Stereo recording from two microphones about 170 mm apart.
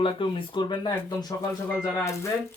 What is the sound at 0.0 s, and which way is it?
Speech, 30° left (ahead or behind).